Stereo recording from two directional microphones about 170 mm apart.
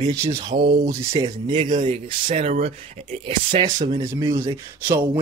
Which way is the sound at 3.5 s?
25° right (ahead or behind).